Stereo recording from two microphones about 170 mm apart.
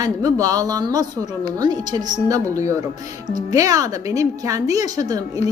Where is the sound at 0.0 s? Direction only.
20° right (ahead or behind).